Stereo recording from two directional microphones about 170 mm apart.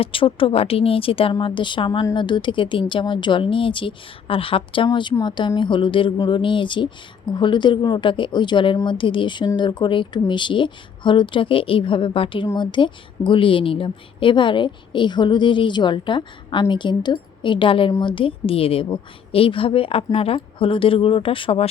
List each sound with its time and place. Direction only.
0.0 s a woman's voice: 30° left (ahead or behind)